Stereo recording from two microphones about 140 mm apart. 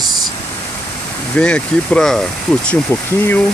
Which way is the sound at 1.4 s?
5° left (ahead or behind).